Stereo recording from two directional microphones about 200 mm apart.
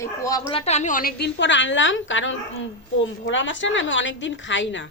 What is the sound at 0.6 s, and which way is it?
A woman's voice, 35° left (ahead or behind).